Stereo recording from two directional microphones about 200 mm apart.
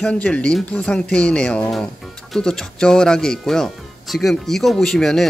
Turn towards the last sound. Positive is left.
turn(degrees=0)  # may be behind; listen again after turning